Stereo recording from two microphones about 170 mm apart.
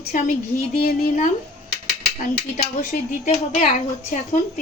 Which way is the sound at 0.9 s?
50° left (ahead or behind).